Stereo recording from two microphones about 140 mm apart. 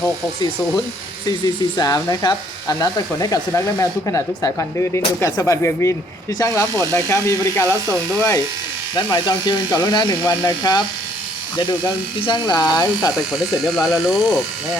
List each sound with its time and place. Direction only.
1.7 s speech: 25° left (ahead or behind)
9.0 s speech: 30° left (ahead or behind)
13.8 s speech: centre (ahead or behind)